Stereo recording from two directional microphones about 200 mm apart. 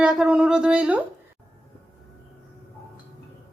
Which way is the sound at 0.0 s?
5° right (ahead or behind).